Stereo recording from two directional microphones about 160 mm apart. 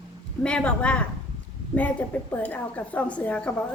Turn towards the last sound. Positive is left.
turn(degrees=5)  # may be behind; listen again after turning